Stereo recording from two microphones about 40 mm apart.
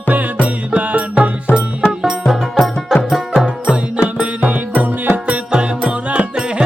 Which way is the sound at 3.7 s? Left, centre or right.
Right.